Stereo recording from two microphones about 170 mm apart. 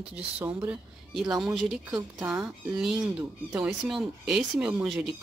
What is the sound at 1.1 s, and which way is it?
Speech, centre (ahead or behind).